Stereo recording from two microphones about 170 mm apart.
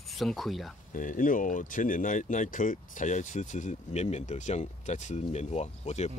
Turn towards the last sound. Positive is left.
turn(degrees=40)  # may be behind; listen again after turning